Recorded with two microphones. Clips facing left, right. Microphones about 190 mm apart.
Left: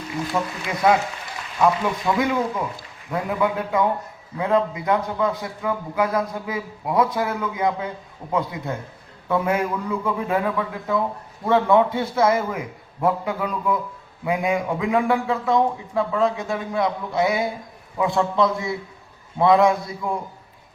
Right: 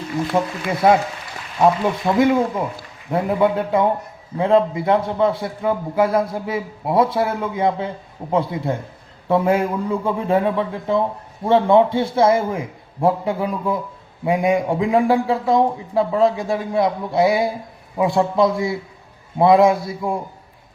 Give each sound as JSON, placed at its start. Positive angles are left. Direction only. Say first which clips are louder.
{"t": 0.3, "sound": "a man's voice", "louder": "right 5 dB", "side_deg": -25}